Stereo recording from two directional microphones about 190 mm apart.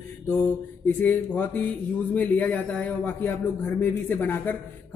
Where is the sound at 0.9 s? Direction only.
10° left (ahead or behind).